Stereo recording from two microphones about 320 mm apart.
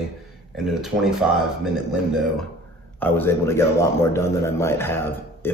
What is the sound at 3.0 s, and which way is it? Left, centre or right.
A man's voice, centre.